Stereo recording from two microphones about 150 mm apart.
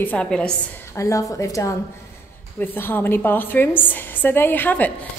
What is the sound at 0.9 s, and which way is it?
A woman's voice, 20° left (ahead or behind).